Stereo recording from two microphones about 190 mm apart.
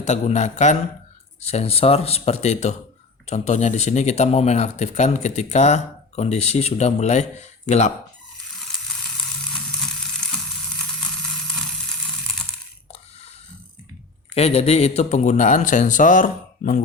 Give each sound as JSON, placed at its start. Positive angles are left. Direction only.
{"t": 0.0, "sound": "speech", "side_deg": 35}
{"t": 9.5, "sound": "sizzle", "side_deg": 0}
{"t": 14.3, "sound": "speech", "side_deg": 35}